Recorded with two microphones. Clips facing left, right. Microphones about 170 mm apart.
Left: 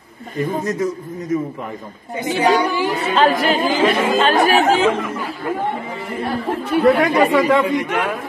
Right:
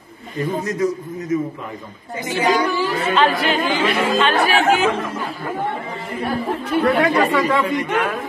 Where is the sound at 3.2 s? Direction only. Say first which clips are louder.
Left 3 dB; 40° left (ahead or behind).